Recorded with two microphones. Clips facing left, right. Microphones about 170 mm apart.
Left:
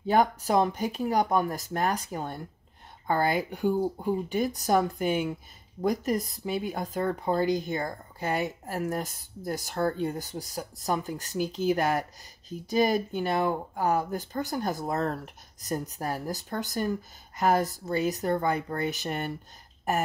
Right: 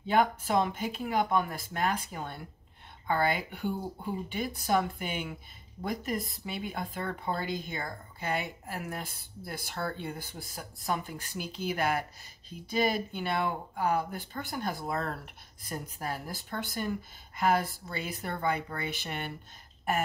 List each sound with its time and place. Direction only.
0.0 s speech: 45° left (ahead or behind)